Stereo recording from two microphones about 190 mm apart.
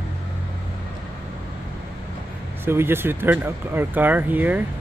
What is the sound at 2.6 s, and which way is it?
Speech, 10° right (ahead or behind).